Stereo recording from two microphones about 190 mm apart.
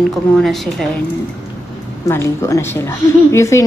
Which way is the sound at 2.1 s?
15° left (ahead or behind).